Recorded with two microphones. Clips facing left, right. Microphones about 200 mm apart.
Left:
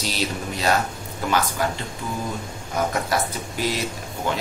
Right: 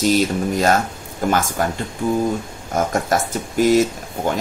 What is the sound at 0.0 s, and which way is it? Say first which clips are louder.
Speech: right 10 dB; 50° right (ahead or behind).